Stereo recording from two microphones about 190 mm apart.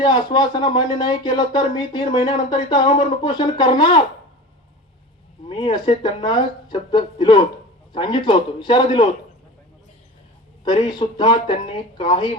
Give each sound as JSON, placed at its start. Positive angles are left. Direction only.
{"t": 0.0, "sound": "speech", "side_deg": 25}
{"t": 5.5, "sound": "speech", "side_deg": 25}
{"t": 10.6, "sound": "speech", "side_deg": 25}